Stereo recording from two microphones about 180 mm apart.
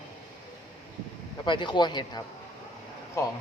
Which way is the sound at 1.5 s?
25° left (ahead or behind).